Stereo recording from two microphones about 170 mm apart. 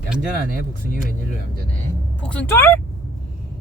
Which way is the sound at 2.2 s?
5° left (ahead or behind).